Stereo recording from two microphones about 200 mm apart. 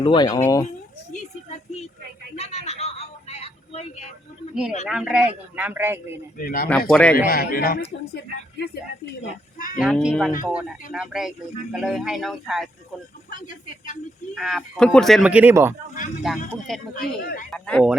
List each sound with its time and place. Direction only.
0.0 s speech: 20° left (ahead or behind)
2.3 s a sound: 30° left (ahead or behind)
4.9 s a man's voice: 5° right (ahead or behind)
6.3 s speech: 45° left (ahead or behind)
6.7 s speech: 5° left (ahead or behind)
7.3 s speech: 45° left (ahead or behind)
9.7 s speech: 5° right (ahead or behind)
13.3 s speech: 40° left (ahead or behind)
14.3 s speech: centre (ahead or behind)
16.9 s speech: 45° left (ahead or behind)
17.5 s speech: 5° left (ahead or behind)